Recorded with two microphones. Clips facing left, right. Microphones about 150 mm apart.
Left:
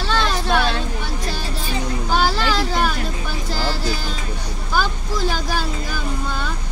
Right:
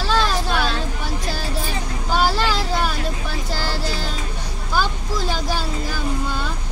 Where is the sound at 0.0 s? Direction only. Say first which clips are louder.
Right 1 dB; 5° right (ahead or behind).